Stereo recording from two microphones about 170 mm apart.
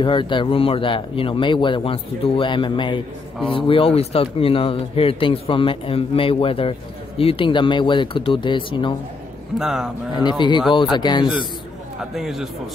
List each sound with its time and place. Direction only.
0.0 s speech: 30° left (ahead or behind)
9.6 s speech: 5° right (ahead or behind)
10.2 s speech: 25° left (ahead or behind)
12.2 s speech: centre (ahead or behind)